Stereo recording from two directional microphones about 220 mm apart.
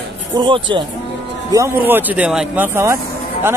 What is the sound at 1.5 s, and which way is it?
Speech, 10° right (ahead or behind).